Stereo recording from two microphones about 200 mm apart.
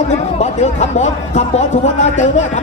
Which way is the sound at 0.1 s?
35° left (ahead or behind).